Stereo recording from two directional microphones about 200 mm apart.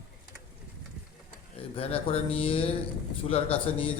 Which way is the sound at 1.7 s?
30° left (ahead or behind).